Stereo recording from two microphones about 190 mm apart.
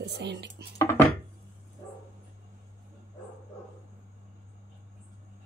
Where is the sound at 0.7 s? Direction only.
15° left (ahead or behind).